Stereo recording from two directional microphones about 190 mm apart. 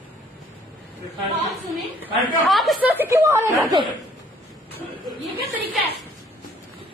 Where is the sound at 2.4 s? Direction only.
Centre (ahead or behind); by 3.8 s 20° right (ahead or behind).